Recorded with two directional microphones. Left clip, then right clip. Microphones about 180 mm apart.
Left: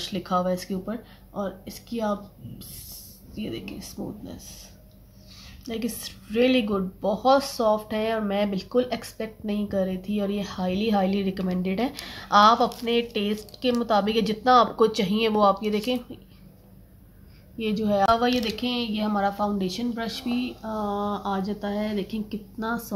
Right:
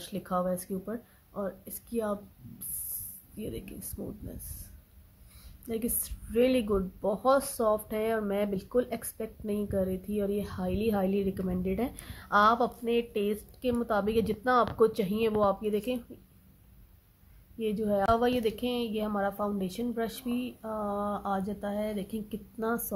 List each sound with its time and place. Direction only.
0.0 s speech: 35° right (ahead or behind)
3.3 s speech: 35° right (ahead or behind)
5.7 s speech: 35° right (ahead or behind)
17.6 s speech: 25° right (ahead or behind); by 22.8 s 45° right (ahead or behind)